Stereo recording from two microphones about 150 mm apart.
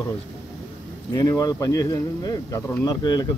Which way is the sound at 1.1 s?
25° left (ahead or behind).